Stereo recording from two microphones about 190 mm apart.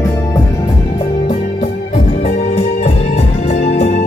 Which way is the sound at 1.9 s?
35° left (ahead or behind).